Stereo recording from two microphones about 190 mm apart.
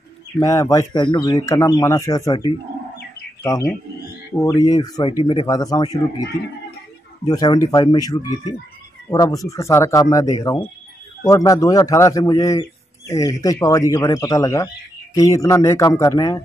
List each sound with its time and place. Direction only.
0.4 s a man's voice: 15° left (ahead or behind)
7.2 s a man's voice: 20° left (ahead or behind)